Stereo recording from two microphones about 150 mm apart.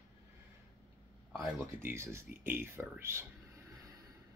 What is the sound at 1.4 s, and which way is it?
Speech, 15° right (ahead or behind).